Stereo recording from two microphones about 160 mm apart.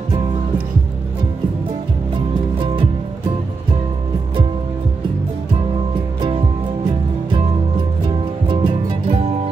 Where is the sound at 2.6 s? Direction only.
35° right (ahead or behind).